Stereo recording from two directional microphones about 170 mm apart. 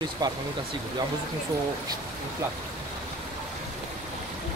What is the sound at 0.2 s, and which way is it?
Speech, 25° right (ahead or behind).